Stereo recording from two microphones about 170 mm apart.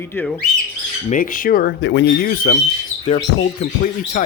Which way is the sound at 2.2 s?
55° left (ahead or behind).